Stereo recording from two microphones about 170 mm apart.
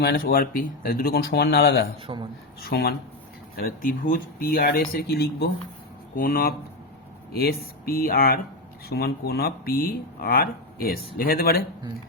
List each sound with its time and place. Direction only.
0.0 s speech: 70° left (ahead or behind)
2.1 s speech: 30° right (ahead or behind)
2.6 s speech: 65° left (ahead or behind)
6.1 s speech: 60° left (ahead or behind)